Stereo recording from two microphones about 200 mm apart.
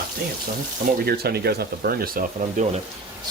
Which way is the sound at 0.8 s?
50° right (ahead or behind).